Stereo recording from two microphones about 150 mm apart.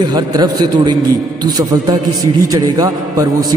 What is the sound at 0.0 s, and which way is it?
Speech, 25° right (ahead or behind).